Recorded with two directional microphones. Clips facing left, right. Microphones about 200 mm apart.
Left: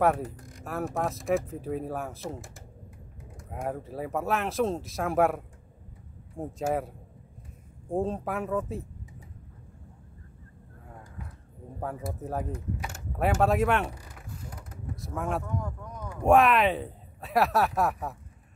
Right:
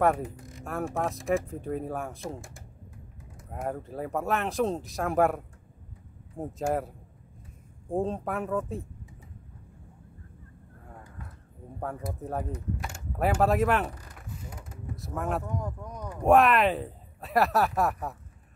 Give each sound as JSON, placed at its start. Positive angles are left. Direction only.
{"t": 0.0, "sound": "speech", "side_deg": 0}
{"t": 7.9, "sound": "speech", "side_deg": 0}
{"t": 10.9, "sound": "a sound", "side_deg": 0}
{"t": 11.8, "sound": "speech", "side_deg": 0}
{"t": 15.0, "sound": "speech", "side_deg": 0}
{"t": 15.4, "sound": "speech", "side_deg": -20}
{"t": 16.2, "sound": "speech", "side_deg": 0}